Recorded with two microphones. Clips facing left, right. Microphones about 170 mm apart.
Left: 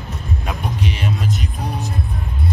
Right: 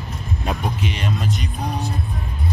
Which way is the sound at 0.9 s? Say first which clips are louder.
Left 3 dB; 5° left (ahead or behind).